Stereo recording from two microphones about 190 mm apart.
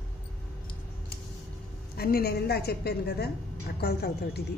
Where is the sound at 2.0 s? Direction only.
55° left (ahead or behind).